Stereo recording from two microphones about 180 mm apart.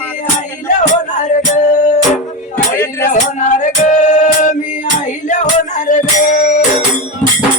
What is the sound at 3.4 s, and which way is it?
Music, 40° left (ahead or behind).